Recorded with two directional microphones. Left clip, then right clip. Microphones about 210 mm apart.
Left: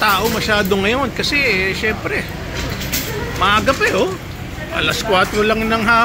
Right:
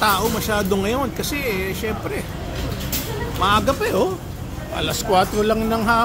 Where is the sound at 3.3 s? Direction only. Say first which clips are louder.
Left 4 dB; 10° right (ahead or behind).